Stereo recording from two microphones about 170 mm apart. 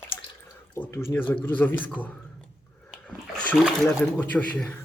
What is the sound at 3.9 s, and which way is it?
Speech, 10° left (ahead or behind).